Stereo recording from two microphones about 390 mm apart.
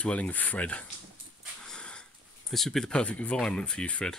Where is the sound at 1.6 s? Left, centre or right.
Centre.